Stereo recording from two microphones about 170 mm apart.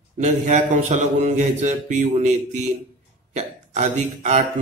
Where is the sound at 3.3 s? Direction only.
40° right (ahead or behind).